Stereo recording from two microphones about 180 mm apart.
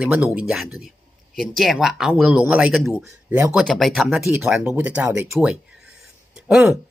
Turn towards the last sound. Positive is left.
turn(degrees=-5)  # may be behind; listen again after turning